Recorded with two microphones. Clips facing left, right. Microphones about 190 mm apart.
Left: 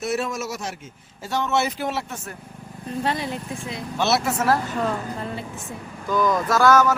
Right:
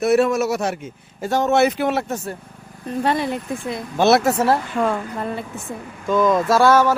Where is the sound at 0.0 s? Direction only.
60° right (ahead or behind).